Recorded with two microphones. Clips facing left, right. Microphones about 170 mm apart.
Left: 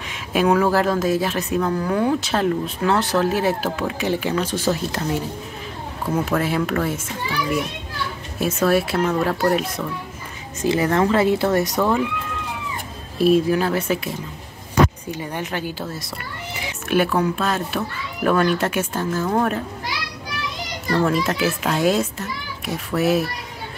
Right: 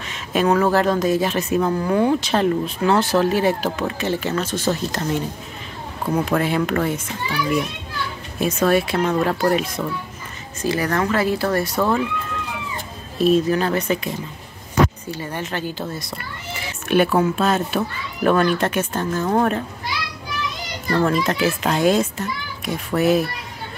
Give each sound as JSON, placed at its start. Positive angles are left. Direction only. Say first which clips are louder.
{"t": 0.1, "sound": "a woman's voice", "louder": "even", "side_deg": 10}
{"t": 6.2, "sound": "a woman's voice", "louder": "right 2 dB", "side_deg": 0}
{"t": 8.4, "sound": "a woman's voice", "louder": "right 1 dB", "side_deg": 5}
{"t": 10.6, "sound": "speech", "louder": "left 3 dB", "side_deg": 25}
{"t": 13.2, "sound": "speech", "louder": "even", "side_deg": 10}
{"t": 16.9, "sound": "a woman's voice", "louder": "right 2 dB", "side_deg": 0}
{"t": 20.9, "sound": "a woman's voice", "louder": "right 1 dB", "side_deg": 5}